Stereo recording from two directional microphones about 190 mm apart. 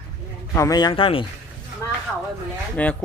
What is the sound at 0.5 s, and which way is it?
Speech, 20° left (ahead or behind).